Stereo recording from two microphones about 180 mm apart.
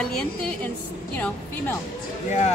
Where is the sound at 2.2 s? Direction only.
40° left (ahead or behind).